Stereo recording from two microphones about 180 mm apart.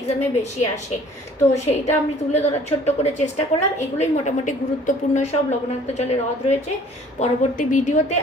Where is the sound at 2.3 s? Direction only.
40° left (ahead or behind).